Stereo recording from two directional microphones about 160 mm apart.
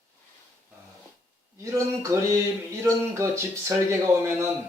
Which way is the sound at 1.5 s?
20° right (ahead or behind).